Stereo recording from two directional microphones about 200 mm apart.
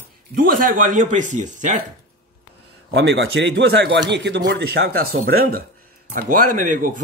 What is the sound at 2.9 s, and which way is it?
Speech, 55° right (ahead or behind).